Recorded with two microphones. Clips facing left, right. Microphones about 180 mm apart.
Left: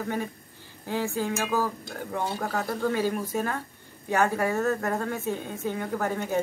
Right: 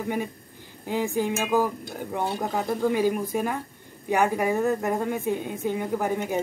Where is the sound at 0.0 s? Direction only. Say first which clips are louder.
Right 2 dB; 15° right (ahead or behind).